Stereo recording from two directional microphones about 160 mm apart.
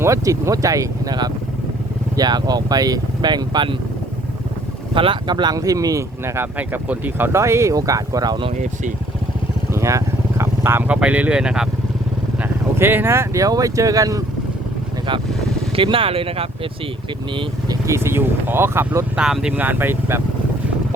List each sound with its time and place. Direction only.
0.0 s speech: 20° right (ahead or behind)
4.9 s speech: 30° right (ahead or behind)
9.7 s speech: 20° right (ahead or behind)
15.7 s speech: 35° right (ahead or behind)
17.3 s speech: 20° right (ahead or behind)